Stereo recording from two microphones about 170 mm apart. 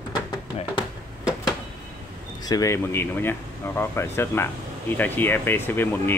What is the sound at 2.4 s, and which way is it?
Speech, 20° left (ahead or behind).